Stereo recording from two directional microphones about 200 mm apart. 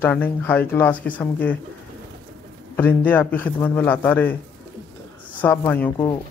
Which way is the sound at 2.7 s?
10° left (ahead or behind).